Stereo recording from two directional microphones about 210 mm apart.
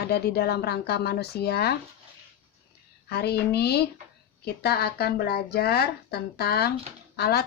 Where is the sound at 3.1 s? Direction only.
50° left (ahead or behind).